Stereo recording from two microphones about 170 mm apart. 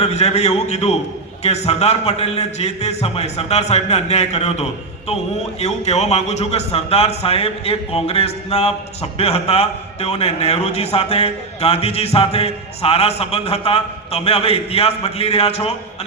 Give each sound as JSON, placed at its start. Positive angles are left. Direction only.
{"t": 0.0, "sound": "a man's voice", "side_deg": 40}